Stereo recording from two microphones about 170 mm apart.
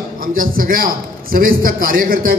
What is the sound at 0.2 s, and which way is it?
A man's voice, 55° right (ahead or behind).